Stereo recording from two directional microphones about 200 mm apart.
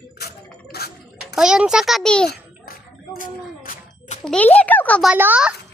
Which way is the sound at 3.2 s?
40° left (ahead or behind).